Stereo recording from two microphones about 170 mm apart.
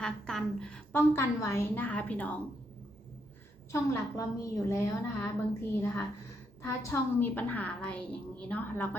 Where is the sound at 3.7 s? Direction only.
15° left (ahead or behind).